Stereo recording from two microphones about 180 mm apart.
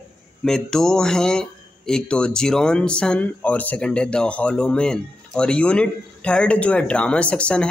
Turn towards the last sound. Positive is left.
turn(degrees=5)  # may be behind; listen again after turning